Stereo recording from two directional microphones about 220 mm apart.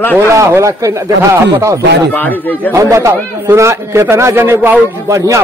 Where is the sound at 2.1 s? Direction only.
10° left (ahead or behind).